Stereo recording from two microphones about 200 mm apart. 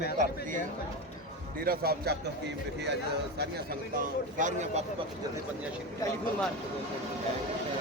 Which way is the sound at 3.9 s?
40° right (ahead or behind).